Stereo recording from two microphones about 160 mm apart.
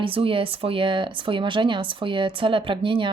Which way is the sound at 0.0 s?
35° right (ahead or behind).